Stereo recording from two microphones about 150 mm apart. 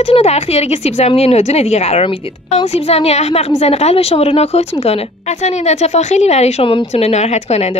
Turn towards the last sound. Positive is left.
turn(degrees=45)  # may be behind; listen again after turning